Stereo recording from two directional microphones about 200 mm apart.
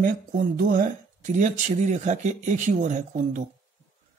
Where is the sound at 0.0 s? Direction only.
45° right (ahead or behind).